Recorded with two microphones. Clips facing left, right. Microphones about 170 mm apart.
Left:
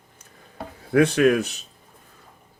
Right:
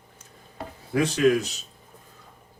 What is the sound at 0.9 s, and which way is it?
Speech, 60° left (ahead or behind).